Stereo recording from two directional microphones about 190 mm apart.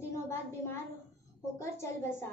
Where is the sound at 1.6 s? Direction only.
15° left (ahead or behind).